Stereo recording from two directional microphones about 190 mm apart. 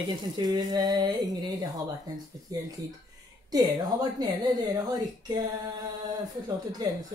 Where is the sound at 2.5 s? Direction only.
20° right (ahead or behind).